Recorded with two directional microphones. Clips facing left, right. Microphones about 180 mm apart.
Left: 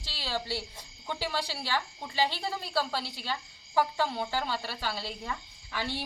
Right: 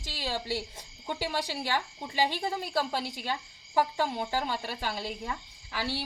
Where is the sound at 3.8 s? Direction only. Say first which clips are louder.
Even; 15° right (ahead or behind).